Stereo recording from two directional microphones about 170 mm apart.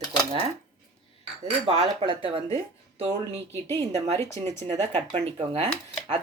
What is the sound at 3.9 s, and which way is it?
Speech, 40° right (ahead or behind).